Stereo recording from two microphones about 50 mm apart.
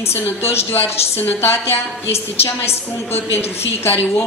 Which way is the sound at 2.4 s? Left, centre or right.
Left.